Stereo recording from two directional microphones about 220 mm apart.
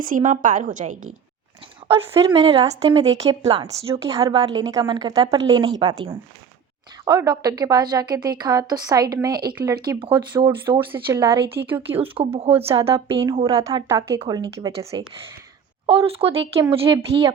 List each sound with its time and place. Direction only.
0.0 s a woman's voice: 35° right (ahead or behind)
1.9 s speech: 25° right (ahead or behind)
4.0 s a woman's voice: 15° right (ahead or behind)
11.9 s speech: 25° right (ahead or behind)
15.9 s speech: 25° right (ahead or behind)